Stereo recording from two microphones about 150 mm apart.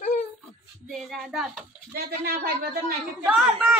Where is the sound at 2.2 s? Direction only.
90° right.